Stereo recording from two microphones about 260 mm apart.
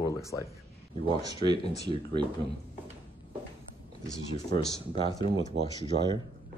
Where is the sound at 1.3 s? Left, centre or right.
Centre.